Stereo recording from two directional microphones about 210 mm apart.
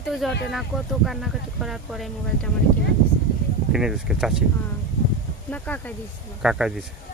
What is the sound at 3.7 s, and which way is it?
Speech, 5° right (ahead or behind).